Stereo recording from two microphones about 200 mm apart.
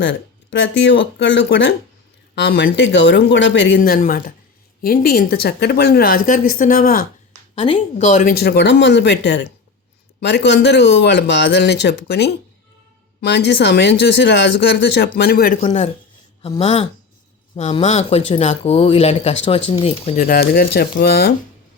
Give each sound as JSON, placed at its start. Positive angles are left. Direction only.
{"t": 0.0, "sound": "speech", "side_deg": 65}
{"t": 7.5, "sound": "speech", "side_deg": 30}
{"t": 8.3, "sound": "speech", "side_deg": 50}
{"t": 15.6, "sound": "speech", "side_deg": 35}
{"t": 20.2, "sound": "speech", "side_deg": 50}